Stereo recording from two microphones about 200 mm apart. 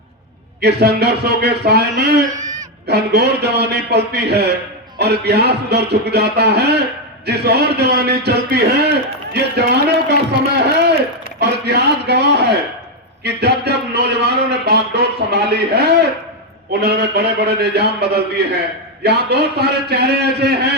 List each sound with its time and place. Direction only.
0.6 s a man's voice: 55° right (ahead or behind)